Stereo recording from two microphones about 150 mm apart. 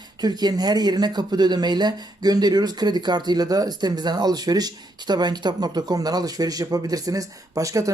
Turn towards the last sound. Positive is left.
turn(degrees=-20)  # may be behind; listen again after turning